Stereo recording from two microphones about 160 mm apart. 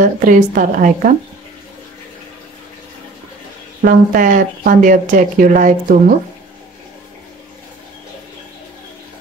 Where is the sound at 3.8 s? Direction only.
60° right (ahead or behind).